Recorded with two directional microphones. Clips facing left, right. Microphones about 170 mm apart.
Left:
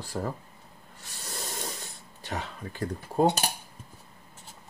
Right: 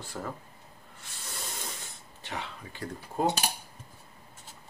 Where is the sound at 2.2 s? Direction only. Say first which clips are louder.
Left 3 dB; 40° left (ahead or behind).